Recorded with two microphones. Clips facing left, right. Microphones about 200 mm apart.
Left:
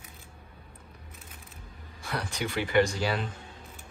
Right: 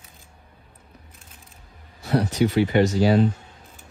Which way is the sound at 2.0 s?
40° right (ahead or behind).